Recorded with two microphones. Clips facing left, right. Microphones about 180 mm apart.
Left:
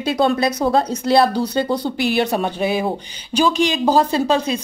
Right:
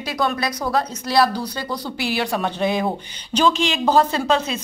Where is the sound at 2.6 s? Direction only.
10° left (ahead or behind).